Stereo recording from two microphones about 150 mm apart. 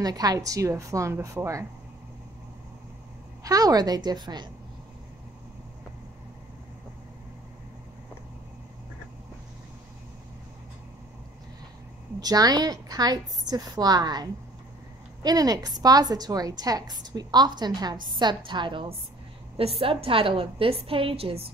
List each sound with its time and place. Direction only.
0.0 s a woman's voice: 25° right (ahead or behind)
3.4 s a woman's voice: 25° right (ahead or behind)
12.2 s a woman's voice: 25° right (ahead or behind)